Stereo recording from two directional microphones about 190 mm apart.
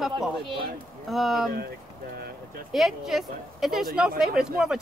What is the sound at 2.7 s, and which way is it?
A woman's voice, centre (ahead or behind).